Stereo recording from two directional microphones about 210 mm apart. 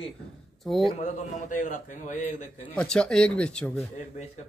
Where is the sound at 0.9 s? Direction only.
35° left (ahead or behind).